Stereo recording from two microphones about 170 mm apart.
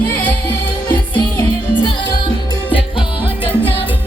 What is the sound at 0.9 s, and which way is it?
Music, 25° left (ahead or behind).